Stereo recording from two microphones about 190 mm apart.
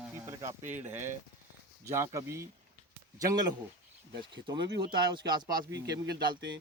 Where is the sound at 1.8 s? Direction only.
15° right (ahead or behind).